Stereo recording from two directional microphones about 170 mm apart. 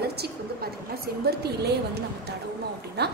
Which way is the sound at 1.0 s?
70° right (ahead or behind).